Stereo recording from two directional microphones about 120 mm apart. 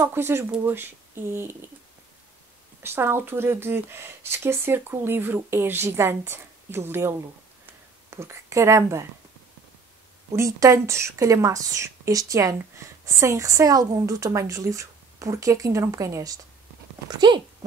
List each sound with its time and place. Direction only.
0.0 s a woman's voice: 20° right (ahead or behind)
2.8 s a woman's voice: 20° right (ahead or behind)
10.3 s a woman's voice: 25° right (ahead or behind)
17.1 s speech: 35° right (ahead or behind)